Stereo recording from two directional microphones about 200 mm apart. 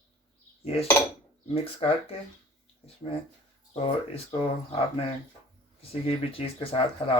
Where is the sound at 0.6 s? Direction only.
30° left (ahead or behind).